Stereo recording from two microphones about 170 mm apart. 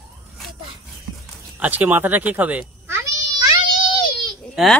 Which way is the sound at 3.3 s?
25° right (ahead or behind).